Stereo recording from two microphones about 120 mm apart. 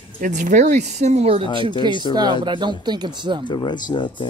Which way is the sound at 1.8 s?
35° right (ahead or behind).